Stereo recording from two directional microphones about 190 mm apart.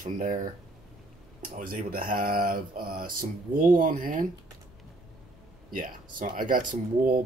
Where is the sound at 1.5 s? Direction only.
45° right (ahead or behind).